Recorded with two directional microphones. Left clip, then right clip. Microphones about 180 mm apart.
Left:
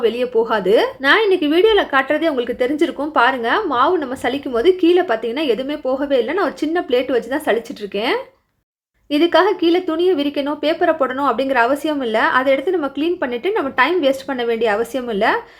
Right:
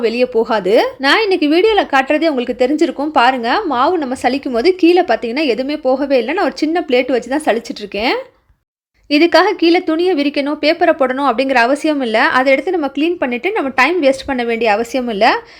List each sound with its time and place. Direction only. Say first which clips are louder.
0.0 s speech: right 3 dB; 30° right (ahead or behind)